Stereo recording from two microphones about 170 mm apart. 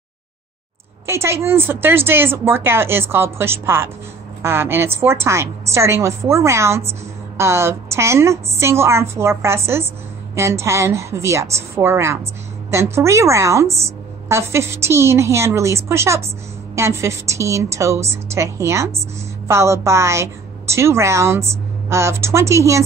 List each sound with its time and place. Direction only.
1.0 s a woman's voice: 15° right (ahead or behind)